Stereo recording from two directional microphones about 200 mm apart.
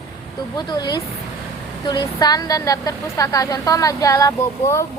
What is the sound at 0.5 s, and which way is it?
A woman's voice, 20° left (ahead or behind).